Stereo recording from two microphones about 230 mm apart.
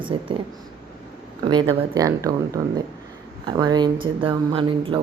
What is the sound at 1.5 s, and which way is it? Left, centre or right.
Speech, centre.